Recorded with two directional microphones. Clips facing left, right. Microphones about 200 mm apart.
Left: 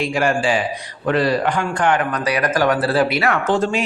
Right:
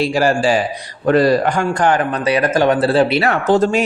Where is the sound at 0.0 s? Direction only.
35° right (ahead or behind).